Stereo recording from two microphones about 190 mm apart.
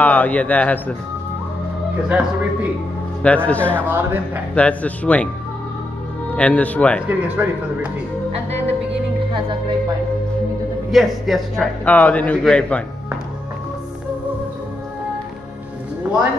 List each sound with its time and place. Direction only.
0.0 s a man's voice: 10° left (ahead or behind)
2.0 s speech: 5° right (ahead or behind)
3.4 s a man's voice: 10° left (ahead or behind)
3.8 s speech: 10° right (ahead or behind)
4.6 s a man's voice: 5° left (ahead or behind)
6.3 s a man's voice: 5° left (ahead or behind)
7.1 s speech: 10° right (ahead or behind)
10.9 s a man's voice: centre (ahead or behind)
16.0 s speech: 5° right (ahead or behind)